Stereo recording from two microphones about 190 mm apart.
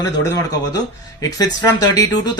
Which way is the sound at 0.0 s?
20° left (ahead or behind).